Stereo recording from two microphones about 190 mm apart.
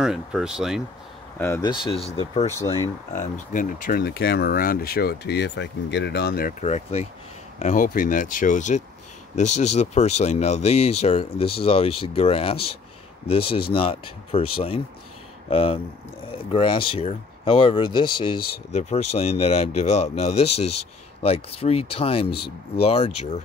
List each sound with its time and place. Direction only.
0.0 s speech: 5° right (ahead or behind)
1.4 s speech: 10° left (ahead or behind)
1.9 s speech: 30° left (ahead or behind)
2.6 s speech: 15° left (ahead or behind)
3.1 s speech: 40° left (ahead or behind)
6.6 s speech: 35° left (ahead or behind)
18.7 s speech: 35° left (ahead or behind)